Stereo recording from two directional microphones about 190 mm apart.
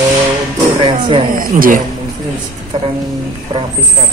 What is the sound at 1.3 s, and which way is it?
Speech, 45° right (ahead or behind).